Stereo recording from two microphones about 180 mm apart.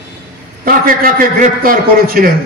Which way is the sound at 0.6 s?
55° right (ahead or behind).